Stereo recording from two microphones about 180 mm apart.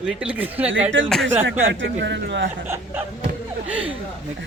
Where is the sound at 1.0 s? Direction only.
90° right.